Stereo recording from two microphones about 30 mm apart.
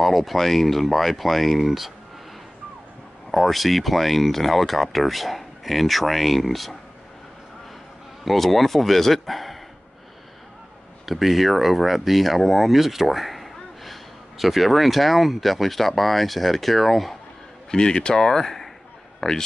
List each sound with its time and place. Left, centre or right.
0.0 s speech: centre
3.3 s speech: centre
8.3 s speech: centre
11.1 s speech: centre
17.6 s speech: left
18.2 s speech: centre
19.2 s speech: left